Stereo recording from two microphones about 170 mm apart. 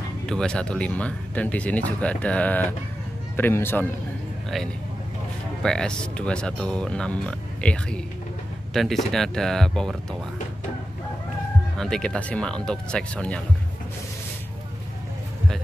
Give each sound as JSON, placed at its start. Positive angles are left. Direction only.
{"t": 0.3, "sound": "speech", "side_deg": 5}
{"t": 5.6, "sound": "speech", "side_deg": 5}
{"t": 11.8, "sound": "speech", "side_deg": 5}